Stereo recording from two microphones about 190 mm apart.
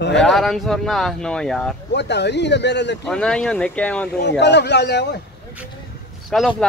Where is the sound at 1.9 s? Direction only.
65° left (ahead or behind).